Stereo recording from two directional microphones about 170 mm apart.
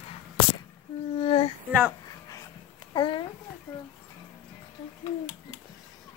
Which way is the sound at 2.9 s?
25° left (ahead or behind).